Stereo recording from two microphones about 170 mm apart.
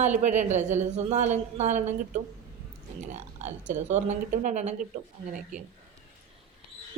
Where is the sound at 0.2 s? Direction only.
45° right (ahead or behind).